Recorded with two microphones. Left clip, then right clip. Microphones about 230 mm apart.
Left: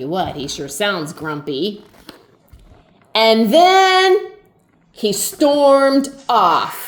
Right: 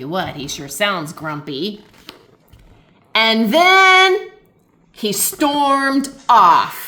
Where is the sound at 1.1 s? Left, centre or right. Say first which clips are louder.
Left 2 dB; centre.